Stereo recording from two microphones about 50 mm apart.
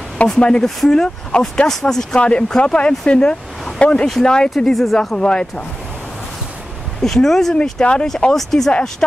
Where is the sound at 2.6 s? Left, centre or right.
Left; by 5.1 s centre.